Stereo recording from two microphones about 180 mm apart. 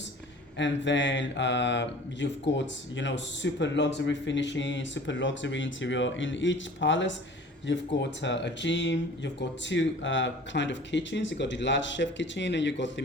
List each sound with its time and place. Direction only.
0.6 s speech: 90° left